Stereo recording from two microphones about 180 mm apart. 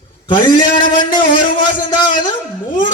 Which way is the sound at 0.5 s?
25° left (ahead or behind).